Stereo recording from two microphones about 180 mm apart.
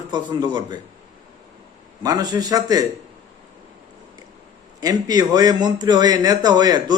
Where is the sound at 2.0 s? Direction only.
20° right (ahead or behind).